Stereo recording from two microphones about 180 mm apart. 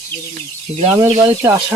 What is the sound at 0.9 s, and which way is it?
Speech, 25° right (ahead or behind).